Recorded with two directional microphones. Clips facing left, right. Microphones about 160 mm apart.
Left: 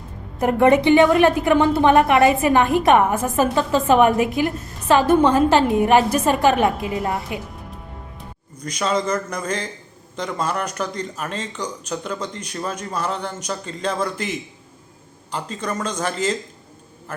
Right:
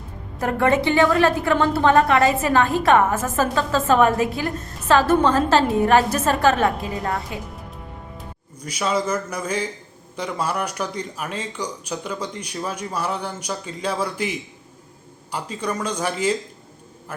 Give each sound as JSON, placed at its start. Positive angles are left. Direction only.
{"t": 0.3, "sound": "a woman's voice", "side_deg": 20}
{"t": 8.6, "sound": "speech", "side_deg": -10}